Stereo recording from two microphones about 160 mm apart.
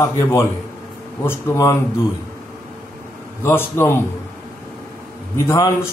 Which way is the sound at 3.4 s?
15° left (ahead or behind).